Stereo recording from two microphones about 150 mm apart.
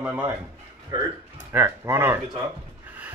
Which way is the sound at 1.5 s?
15° right (ahead or behind).